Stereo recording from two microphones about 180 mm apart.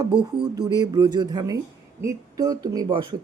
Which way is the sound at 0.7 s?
20° right (ahead or behind).